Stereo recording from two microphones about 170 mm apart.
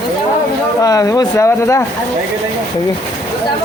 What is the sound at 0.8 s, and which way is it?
Speech, 20° left (ahead or behind).